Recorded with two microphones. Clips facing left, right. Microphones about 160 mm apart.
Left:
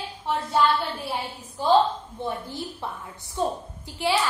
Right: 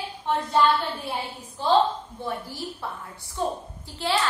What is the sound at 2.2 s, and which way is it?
A woman's voice, 20° left (ahead or behind).